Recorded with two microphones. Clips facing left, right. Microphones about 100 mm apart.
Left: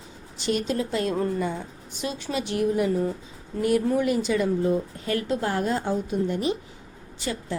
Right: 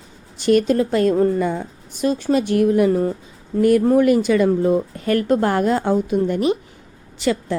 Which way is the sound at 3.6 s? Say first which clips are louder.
Right 8 dB; 55° right (ahead or behind).